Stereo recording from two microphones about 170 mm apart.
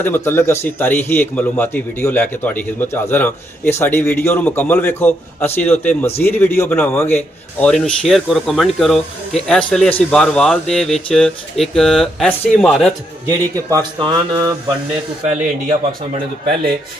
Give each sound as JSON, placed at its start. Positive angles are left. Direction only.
{"t": 0.0, "sound": "a man's voice", "side_deg": 15}
{"t": 13.7, "sound": "speech", "side_deg": -20}
{"t": 15.2, "sound": "speech", "side_deg": -50}